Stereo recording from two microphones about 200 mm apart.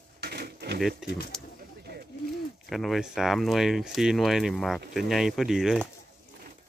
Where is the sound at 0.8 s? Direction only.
Centre (ahead or behind).